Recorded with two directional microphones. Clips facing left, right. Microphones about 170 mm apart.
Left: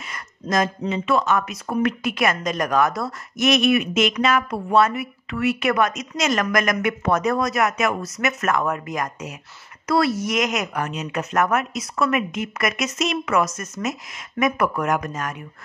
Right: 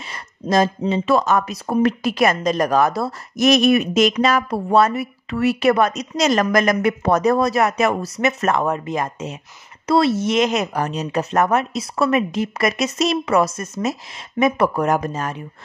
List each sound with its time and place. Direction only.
0.0 s speech: 30° right (ahead or behind)